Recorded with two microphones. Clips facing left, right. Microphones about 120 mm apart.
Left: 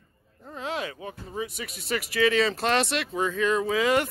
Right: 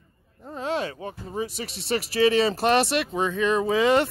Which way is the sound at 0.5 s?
30° right (ahead or behind).